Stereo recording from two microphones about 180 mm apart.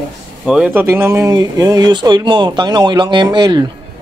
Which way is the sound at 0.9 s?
15° right (ahead or behind).